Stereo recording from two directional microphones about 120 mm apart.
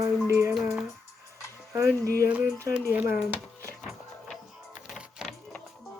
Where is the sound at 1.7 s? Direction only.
25° right (ahead or behind).